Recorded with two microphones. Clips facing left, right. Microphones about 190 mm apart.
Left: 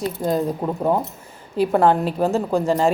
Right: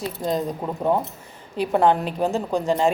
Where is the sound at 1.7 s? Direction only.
45° left (ahead or behind).